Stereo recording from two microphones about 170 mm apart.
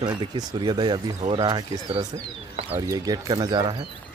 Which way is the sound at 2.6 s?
15° right (ahead or behind).